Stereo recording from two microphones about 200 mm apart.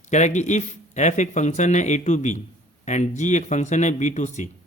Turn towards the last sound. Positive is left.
turn(degrees=35)  # may be behind; listen again after turning